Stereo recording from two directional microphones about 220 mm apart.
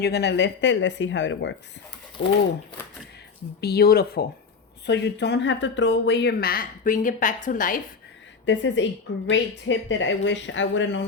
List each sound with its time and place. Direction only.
0.0 s speech: 50° left (ahead or behind)
3.6 s speech: 45° left (ahead or behind)
8.4 s speech: 55° left (ahead or behind)